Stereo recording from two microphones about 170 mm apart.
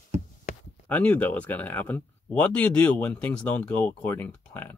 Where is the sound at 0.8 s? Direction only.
10° left (ahead or behind).